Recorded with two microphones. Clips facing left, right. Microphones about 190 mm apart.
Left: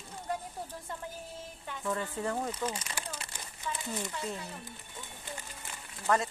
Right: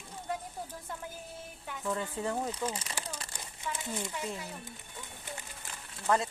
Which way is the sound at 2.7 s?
30° right (ahead or behind).